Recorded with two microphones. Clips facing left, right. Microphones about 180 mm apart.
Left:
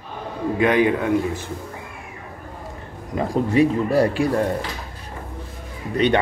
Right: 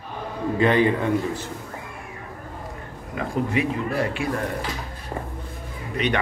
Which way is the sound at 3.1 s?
35° left (ahead or behind).